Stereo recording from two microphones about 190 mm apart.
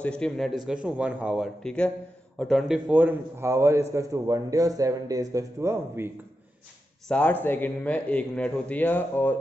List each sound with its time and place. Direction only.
0.0 s a man's voice: 5° left (ahead or behind); by 6.0 s 15° right (ahead or behind)
7.1 s a man's voice: 10° left (ahead or behind)